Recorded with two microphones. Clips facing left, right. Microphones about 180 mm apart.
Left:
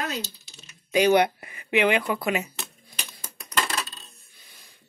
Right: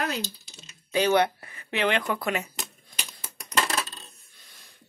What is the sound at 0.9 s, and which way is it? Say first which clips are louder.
Speech: left 3 dB; 15° left (ahead or behind).